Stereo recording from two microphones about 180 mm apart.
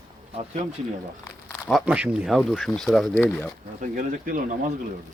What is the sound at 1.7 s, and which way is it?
Speech, 5° right (ahead or behind).